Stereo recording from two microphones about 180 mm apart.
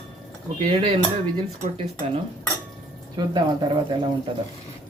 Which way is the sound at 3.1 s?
25° right (ahead or behind).